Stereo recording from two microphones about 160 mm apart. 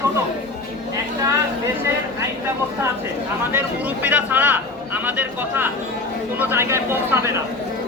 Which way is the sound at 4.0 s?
10° right (ahead or behind).